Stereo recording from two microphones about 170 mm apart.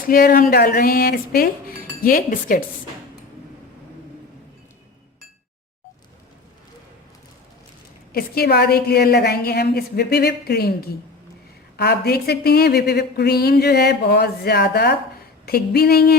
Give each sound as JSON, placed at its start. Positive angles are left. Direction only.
{"t": 0.1, "sound": "speech", "side_deg": 55}
{"t": 8.1, "sound": "speech", "side_deg": 70}
{"t": 15.4, "sound": "speech", "side_deg": 65}